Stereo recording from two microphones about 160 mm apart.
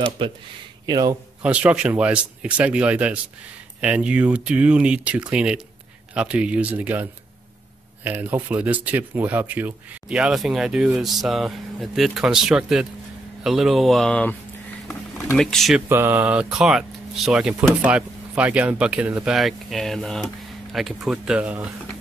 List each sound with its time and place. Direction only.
0.2 s speech: 35° right (ahead or behind)
1.4 s speech: 10° right (ahead or behind)
15.3 s speech: centre (ahead or behind)
15.9 s speech: 15° right (ahead or behind)